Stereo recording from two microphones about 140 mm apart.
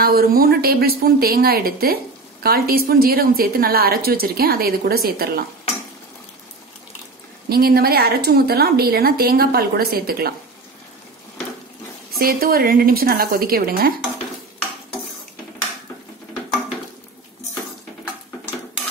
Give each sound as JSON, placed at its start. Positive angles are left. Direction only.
{"t": 0.0, "sound": "a woman's voice", "side_deg": -90}
{"t": 7.4, "sound": "a woman's voice", "side_deg": -90}
{"t": 12.2, "sound": "a woman's voice", "side_deg": -90}